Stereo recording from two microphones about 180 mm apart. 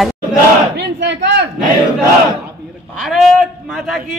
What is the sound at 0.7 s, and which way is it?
Speech, 75° right (ahead or behind).